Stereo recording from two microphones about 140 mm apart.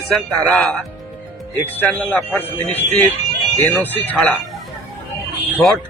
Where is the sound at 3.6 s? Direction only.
15° left (ahead or behind).